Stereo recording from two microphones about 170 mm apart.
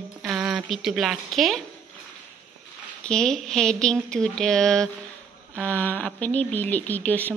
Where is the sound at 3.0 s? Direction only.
5° left (ahead or behind).